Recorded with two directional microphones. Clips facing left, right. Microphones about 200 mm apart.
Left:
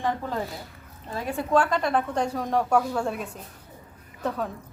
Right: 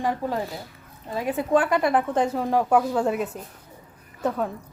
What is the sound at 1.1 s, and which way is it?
A woman's voice, 10° right (ahead or behind).